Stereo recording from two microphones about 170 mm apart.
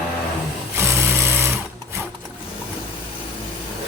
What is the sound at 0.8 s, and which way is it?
Sewing machine, 15° right (ahead or behind).